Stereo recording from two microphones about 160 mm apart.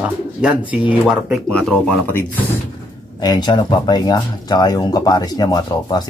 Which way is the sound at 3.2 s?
25° left (ahead or behind).